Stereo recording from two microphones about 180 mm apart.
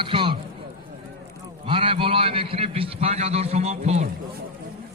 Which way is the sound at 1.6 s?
30° right (ahead or behind).